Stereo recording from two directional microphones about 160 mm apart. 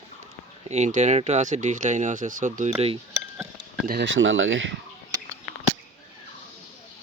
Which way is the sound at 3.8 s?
70° right (ahead or behind).